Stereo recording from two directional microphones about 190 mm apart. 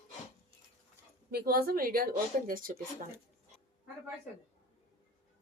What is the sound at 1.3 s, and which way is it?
A woman's voice, 55° right (ahead or behind).